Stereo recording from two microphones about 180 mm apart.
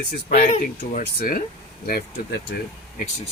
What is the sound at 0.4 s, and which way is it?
Speech, 40° left (ahead or behind).